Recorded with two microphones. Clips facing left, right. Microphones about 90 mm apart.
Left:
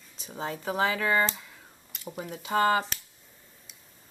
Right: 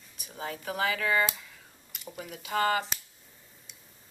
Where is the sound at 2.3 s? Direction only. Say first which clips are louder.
Left 3 dB; 25° left (ahead or behind).